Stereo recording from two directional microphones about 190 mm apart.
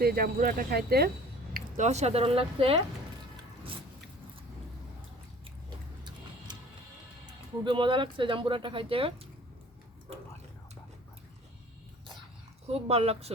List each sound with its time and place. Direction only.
0.0 s speech: 50° right (ahead or behind)
1.5 s speech: 40° right (ahead or behind)
7.6 s speech: 25° right (ahead or behind)
10.1 s a sound: 30° right (ahead or behind)
12.6 s speech: 30° right (ahead or behind)